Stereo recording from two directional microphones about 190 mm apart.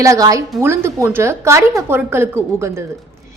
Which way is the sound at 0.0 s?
15° right (ahead or behind).